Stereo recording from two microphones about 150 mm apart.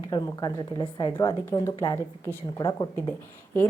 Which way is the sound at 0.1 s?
30° left (ahead or behind).